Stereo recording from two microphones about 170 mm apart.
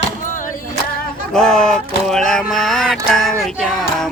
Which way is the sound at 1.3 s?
5° left (ahead or behind).